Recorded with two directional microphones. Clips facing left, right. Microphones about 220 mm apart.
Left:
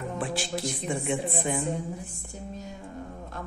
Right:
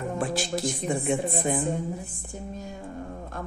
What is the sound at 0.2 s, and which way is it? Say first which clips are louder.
Speech: right 3 dB; 45° right (ahead or behind).